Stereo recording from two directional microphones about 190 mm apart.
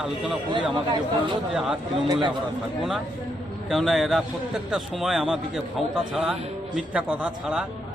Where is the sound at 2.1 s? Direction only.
25° right (ahead or behind).